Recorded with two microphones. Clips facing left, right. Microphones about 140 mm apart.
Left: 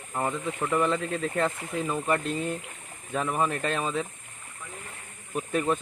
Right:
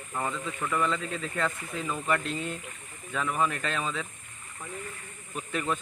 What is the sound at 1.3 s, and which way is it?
Speech, 35° left (ahead or behind).